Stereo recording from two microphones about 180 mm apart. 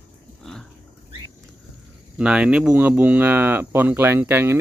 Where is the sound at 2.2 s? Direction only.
5° right (ahead or behind).